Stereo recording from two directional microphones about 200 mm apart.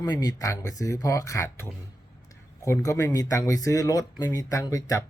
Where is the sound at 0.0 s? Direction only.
20° left (ahead or behind).